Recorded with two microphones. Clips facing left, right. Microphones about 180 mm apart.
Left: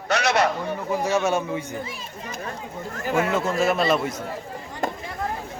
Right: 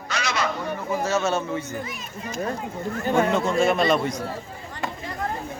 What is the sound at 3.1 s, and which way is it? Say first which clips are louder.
A man's voice: right 1 dB; 5° left (ahead or behind).